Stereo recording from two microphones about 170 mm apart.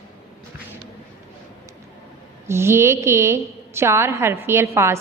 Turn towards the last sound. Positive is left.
turn(degrees=-15)  # may be behind; listen again after turning